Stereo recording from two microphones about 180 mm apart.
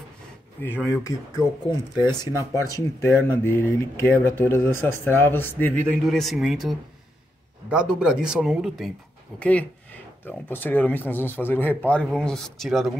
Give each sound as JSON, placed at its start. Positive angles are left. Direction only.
{"t": 0.6, "sound": "speech", "side_deg": 10}